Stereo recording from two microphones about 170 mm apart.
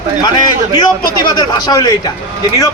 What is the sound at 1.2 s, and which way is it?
Speech, 25° left (ahead or behind).